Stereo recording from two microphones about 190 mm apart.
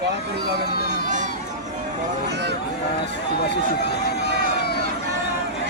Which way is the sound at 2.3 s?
65° right (ahead or behind).